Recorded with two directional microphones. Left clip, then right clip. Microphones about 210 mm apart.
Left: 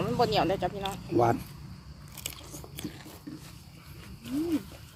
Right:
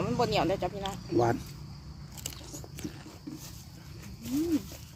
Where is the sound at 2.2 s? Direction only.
15° left (ahead or behind).